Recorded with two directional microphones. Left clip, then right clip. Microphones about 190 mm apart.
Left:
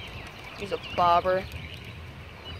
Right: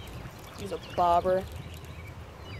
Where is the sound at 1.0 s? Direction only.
35° right (ahead or behind).